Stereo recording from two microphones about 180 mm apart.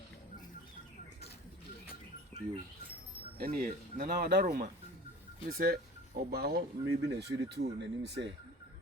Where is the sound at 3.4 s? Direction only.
50° right (ahead or behind).